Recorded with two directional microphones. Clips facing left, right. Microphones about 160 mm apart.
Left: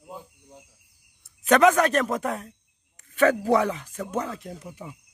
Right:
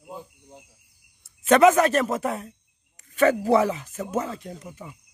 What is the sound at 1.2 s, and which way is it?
Speech, 5° right (ahead or behind).